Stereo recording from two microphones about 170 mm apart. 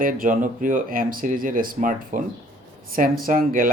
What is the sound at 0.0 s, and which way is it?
Speech, 55° right (ahead or behind).